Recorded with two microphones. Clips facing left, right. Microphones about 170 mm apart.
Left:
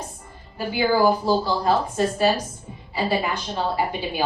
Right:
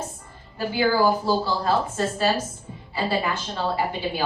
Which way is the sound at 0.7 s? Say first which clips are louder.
Left 2 dB; 15° left (ahead or behind).